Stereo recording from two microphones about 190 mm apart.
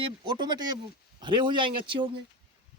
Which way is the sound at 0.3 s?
25° right (ahead or behind).